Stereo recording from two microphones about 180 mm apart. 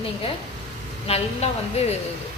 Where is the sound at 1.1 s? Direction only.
35° left (ahead or behind).